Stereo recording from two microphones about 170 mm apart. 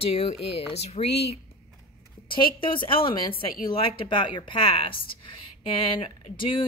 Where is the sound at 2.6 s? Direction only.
30° left (ahead or behind).